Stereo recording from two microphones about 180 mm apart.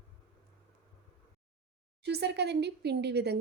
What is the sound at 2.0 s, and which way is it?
Speech, 65° right (ahead or behind).